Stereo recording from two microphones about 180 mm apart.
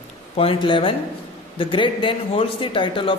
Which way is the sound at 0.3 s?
30° left (ahead or behind).